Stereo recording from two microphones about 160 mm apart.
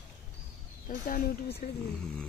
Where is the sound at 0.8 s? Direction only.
55° left (ahead or behind); by 1.7 s 75° left (ahead or behind).